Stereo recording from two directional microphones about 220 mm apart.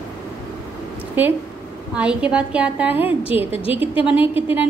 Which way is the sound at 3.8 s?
5° right (ahead or behind).